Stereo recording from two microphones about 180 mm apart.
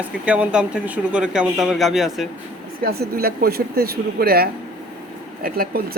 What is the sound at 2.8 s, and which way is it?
Speech, 60° right (ahead or behind).